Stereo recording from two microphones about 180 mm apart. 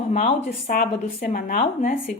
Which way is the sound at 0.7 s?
50° left (ahead or behind).